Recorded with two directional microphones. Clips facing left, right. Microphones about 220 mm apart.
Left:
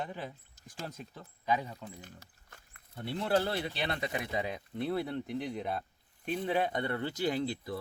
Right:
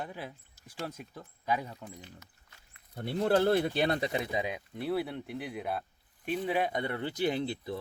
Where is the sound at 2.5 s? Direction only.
50° left (ahead or behind).